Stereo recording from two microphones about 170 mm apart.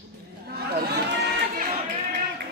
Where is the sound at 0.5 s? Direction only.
75° right (ahead or behind).